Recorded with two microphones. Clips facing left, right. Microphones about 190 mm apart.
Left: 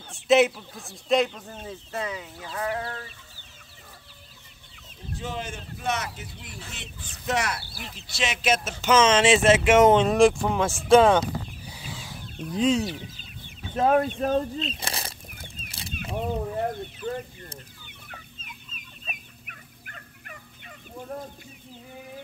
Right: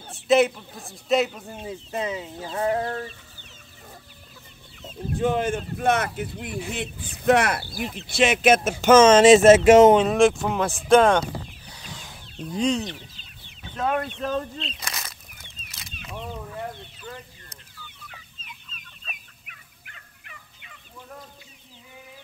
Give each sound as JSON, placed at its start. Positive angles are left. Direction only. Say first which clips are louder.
{"t": 0.3, "sound": "a man's voice", "louder": "even", "side_deg": 0}
{"t": 5.1, "sound": "speech", "louder": "right 11 dB", "side_deg": -55}
{"t": 9.9, "sound": "a man's voice", "louder": "even", "side_deg": 0}
{"t": 13.7, "sound": "speech", "louder": "left 5 dB", "side_deg": 35}
{"t": 14.8, "sound": "a sound", "louder": "left 3 dB", "side_deg": 30}
{"t": 15.3, "sound": "a sound", "louder": "left 6 dB", "side_deg": 50}
{"t": 16.6, "sound": "chicken", "louder": "left 7 dB", "side_deg": 45}
{"t": 19.4, "sound": "fowl", "louder": "left 4 dB", "side_deg": 45}